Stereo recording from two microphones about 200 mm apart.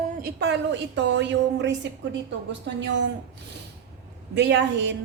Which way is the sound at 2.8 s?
65° right (ahead or behind).